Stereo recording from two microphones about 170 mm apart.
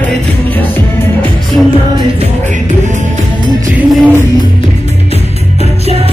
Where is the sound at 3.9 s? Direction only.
10° right (ahead or behind).